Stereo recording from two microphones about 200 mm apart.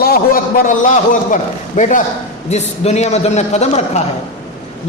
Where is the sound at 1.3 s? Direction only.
40° left (ahead or behind).